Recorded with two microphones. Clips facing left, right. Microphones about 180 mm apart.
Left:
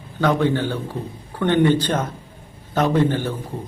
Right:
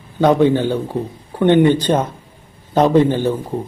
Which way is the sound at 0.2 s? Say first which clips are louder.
Right 6 dB; 15° right (ahead or behind).